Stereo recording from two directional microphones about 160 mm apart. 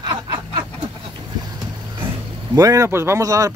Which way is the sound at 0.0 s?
25° right (ahead or behind).